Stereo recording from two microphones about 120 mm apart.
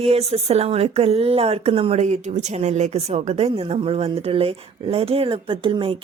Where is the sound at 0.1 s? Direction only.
60° right (ahead or behind).